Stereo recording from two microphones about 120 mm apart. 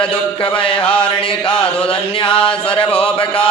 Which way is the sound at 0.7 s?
10° left (ahead or behind).